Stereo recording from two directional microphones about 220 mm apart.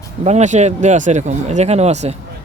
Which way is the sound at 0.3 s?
30° right (ahead or behind).